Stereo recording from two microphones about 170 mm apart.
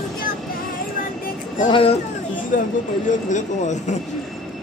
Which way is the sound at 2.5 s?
50° left (ahead or behind).